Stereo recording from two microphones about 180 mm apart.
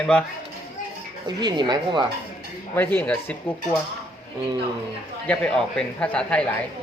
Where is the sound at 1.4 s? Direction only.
25° right (ahead or behind).